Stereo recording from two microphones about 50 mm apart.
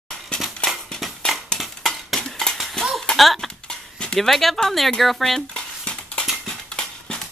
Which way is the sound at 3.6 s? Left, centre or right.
Centre.